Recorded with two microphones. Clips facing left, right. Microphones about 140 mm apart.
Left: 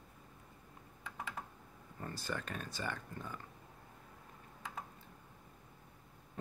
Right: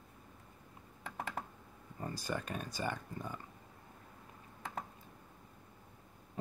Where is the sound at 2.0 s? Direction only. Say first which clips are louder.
Right 3 dB; 20° right (ahead or behind).